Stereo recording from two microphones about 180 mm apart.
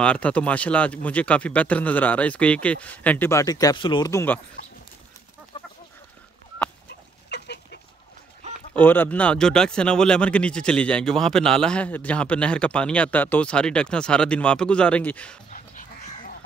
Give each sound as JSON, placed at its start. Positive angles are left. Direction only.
{"t": 0.0, "sound": "speech", "side_deg": 5}
{"t": 6.9, "sound": "duck", "side_deg": 70}
{"t": 8.7, "sound": "speech", "side_deg": 10}
{"t": 15.5, "sound": "dog", "side_deg": 45}